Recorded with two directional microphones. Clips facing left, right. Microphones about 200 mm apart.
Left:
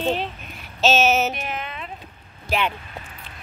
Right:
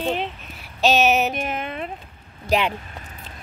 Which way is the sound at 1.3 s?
50° right (ahead or behind).